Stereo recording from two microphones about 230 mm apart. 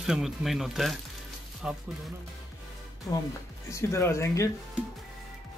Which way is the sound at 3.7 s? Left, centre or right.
Centre.